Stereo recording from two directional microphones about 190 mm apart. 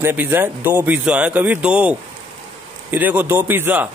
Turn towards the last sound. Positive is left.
turn(degrees=-10)  # may be behind; listen again after turning